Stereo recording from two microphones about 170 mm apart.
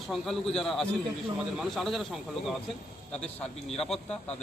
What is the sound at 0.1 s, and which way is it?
Speech, centre (ahead or behind).